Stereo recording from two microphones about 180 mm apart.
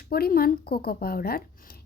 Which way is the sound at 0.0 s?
55° left (ahead or behind).